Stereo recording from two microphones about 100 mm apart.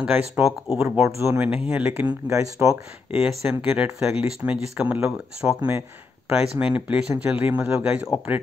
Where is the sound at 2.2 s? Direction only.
30° right (ahead or behind).